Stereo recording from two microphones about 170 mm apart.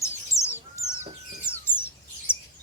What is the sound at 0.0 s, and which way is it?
Bird, 15° left (ahead or behind).